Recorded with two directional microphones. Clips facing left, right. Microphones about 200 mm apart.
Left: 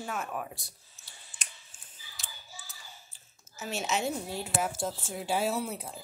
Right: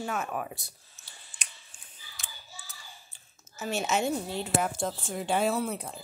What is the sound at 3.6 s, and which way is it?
Speech, centre (ahead or behind).